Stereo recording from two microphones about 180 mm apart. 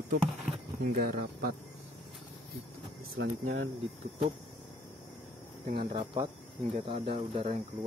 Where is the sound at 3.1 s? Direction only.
90° right.